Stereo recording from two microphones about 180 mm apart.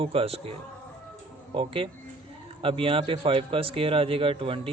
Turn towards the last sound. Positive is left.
turn(degrees=-30)  # may be behind; listen again after turning